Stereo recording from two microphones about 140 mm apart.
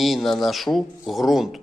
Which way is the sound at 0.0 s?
Centre (ahead or behind).